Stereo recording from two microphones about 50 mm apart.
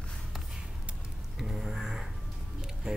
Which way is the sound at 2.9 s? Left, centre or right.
Centre.